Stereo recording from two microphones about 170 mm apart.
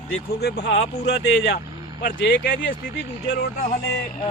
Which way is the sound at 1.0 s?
85° left.